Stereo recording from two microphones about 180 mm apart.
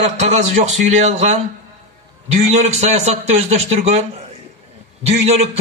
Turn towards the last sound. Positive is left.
turn(degrees=-35)  # may be behind; listen again after turning